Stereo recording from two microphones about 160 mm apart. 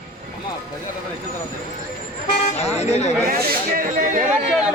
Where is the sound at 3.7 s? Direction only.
60° right (ahead or behind).